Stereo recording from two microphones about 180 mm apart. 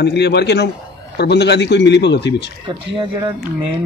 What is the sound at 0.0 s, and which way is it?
A man's voice, 70° left (ahead or behind).